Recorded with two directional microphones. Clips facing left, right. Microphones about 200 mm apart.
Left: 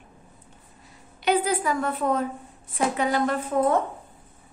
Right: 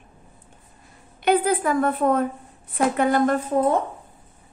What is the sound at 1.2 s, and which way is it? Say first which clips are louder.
A woman's voice: right 3 dB; 55° right (ahead or behind).